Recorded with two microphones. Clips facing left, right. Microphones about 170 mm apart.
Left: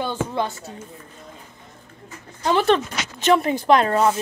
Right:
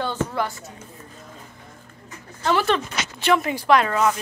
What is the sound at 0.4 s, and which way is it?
Speech, 25° left (ahead or behind).